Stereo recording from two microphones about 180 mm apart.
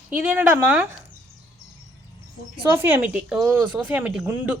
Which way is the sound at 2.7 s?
10° right (ahead or behind).